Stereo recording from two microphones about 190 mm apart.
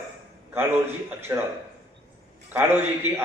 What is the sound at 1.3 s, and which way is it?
Speech, 15° right (ahead or behind).